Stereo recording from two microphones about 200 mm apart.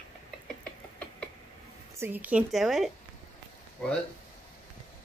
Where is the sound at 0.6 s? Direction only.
5° left (ahead or behind).